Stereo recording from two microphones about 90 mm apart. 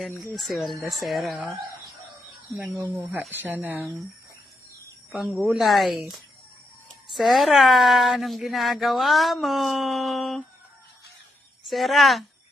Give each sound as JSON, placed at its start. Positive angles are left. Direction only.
{"t": 0.3, "sound": "a woman's voice", "side_deg": 0}
{"t": 2.9, "sound": "speech", "side_deg": -20}
{"t": 5.1, "sound": "a woman's voice", "side_deg": 0}
{"t": 11.6, "sound": "a woman's voice", "side_deg": 0}